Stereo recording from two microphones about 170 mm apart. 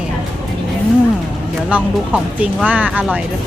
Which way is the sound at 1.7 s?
5° right (ahead or behind).